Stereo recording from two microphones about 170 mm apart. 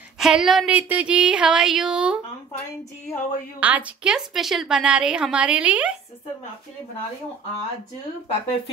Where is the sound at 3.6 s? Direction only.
10° right (ahead or behind).